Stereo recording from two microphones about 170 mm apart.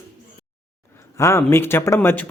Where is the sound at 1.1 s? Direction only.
15° left (ahead or behind).